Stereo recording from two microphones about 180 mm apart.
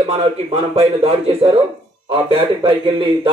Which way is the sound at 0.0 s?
35° right (ahead or behind).